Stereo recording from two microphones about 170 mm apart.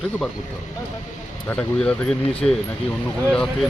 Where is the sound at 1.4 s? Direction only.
10° left (ahead or behind).